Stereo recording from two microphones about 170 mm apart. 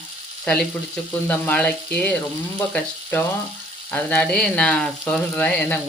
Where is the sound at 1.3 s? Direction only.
10° left (ahead or behind).